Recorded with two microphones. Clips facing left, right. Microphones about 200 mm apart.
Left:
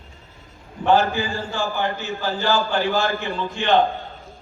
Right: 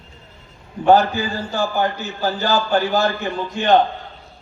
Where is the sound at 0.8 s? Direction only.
40° right (ahead or behind).